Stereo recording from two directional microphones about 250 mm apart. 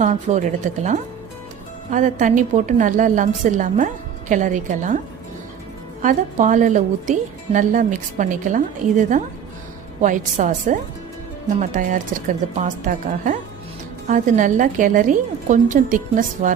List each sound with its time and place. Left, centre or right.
0.0 s a woman's voice: right
6.0 s a woman's voice: right